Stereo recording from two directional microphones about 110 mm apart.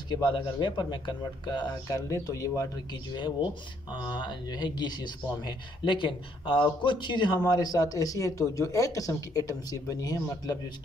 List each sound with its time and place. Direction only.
0.1 s speech: 45° left (ahead or behind)